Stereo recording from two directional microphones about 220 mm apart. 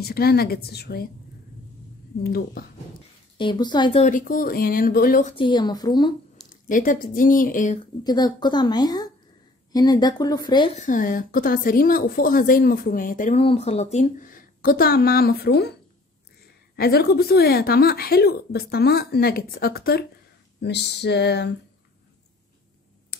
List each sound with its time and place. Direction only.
0.0 s speech: 45° left (ahead or behind)
2.2 s speech: 45° left (ahead or behind)
3.3 s a woman's voice: 20° left (ahead or behind)
4.0 s a woman's voice: 40° left (ahead or behind)
5.3 s a woman's voice: 20° left (ahead or behind)
6.7 s a woman's voice: 40° left (ahead or behind)
8.0 s a woman's voice: 20° left (ahead or behind)
10.7 s a woman's voice: 35° left (ahead or behind)
16.7 s speech: 45° left (ahead or behind)